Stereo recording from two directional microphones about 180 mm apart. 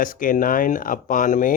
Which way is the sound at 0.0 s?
50° left (ahead or behind).